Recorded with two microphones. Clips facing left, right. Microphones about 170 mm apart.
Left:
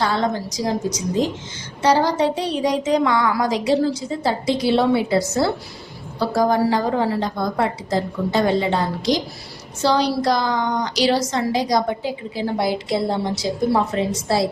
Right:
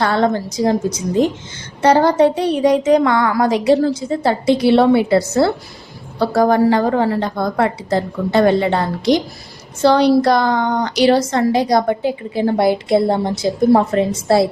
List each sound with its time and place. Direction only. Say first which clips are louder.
0.0 s a woman's voice: right 5 dB; 60° right (ahead or behind)